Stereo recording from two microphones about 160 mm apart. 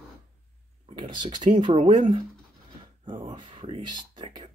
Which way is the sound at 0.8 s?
30° right (ahead or behind).